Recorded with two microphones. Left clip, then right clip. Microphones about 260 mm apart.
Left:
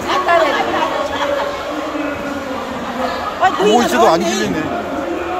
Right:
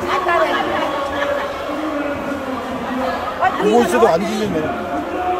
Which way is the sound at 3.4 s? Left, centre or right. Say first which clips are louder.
Left 2 dB; left.